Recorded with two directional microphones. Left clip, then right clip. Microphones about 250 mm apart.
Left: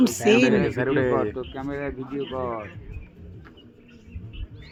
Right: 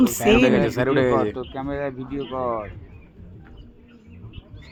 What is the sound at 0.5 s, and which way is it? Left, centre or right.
Speech, right.